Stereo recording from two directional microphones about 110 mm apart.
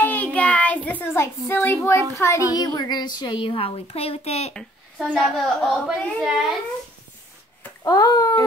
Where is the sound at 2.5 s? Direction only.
40° left (ahead or behind); by 4.5 s 70° left (ahead or behind).